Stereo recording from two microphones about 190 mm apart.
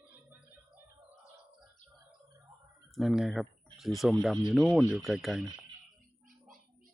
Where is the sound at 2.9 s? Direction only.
Centre (ahead or behind).